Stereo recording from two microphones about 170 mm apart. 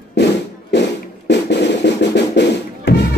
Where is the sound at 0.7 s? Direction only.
90° left.